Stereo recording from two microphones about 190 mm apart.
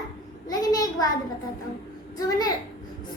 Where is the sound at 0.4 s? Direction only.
20° left (ahead or behind).